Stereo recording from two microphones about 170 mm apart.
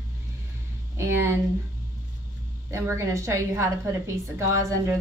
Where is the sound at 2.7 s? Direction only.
15° right (ahead or behind).